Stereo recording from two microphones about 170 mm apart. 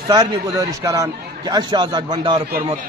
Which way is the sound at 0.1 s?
25° right (ahead or behind).